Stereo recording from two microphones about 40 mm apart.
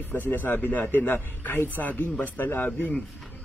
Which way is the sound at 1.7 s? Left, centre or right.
Left.